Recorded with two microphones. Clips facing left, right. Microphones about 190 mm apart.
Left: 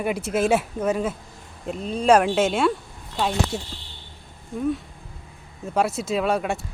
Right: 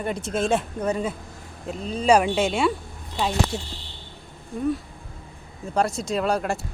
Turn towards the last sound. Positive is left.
turn(degrees=0)  # may be behind; listen again after turning